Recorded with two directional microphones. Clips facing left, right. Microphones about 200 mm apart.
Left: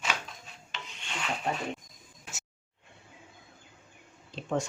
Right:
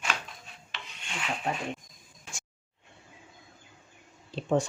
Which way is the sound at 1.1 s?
Centre (ahead or behind).